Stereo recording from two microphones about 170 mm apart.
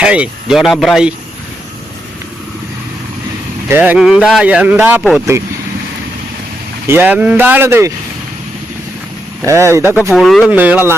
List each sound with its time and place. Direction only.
0.0 s speech: 5° right (ahead or behind)
3.7 s speech: 10° right (ahead or behind)
6.8 s speech: 10° right (ahead or behind)
9.4 s speech: 15° right (ahead or behind)
10.1 s speech: centre (ahead or behind)
10.5 s speech: 10° right (ahead or behind)